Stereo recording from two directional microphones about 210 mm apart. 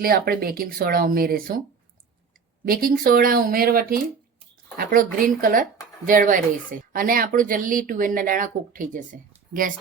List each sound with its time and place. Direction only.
0.0 s speech: 45° right (ahead or behind)
2.6 s speech: 45° right (ahead or behind)